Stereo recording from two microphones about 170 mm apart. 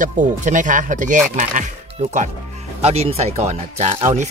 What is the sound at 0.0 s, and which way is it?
Speech, 50° right (ahead or behind).